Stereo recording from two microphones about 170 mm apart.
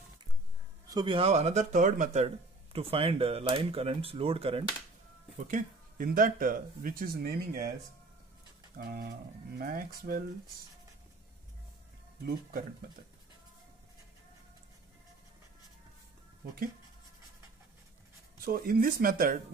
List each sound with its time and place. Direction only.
0.8 s speech: 25° right (ahead or behind)
5.5 s speech: 55° right (ahead or behind)
8.7 s speech: 60° right (ahead or behind)
12.3 s speech: 60° right (ahead or behind)
18.4 s speech: 60° right (ahead or behind)